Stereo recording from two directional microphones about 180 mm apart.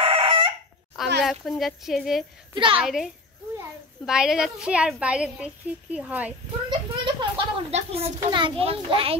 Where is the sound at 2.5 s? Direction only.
30° right (ahead or behind).